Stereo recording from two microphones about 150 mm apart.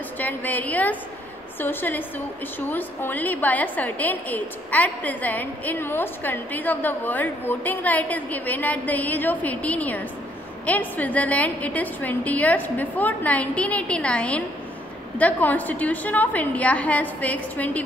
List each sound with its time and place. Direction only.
0.2 s a woman's voice: 10° left (ahead or behind)